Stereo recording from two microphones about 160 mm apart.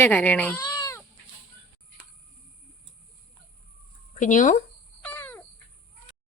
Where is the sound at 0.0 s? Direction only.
10° left (ahead or behind).